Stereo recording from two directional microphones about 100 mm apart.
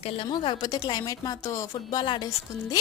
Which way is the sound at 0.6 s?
40° left (ahead or behind).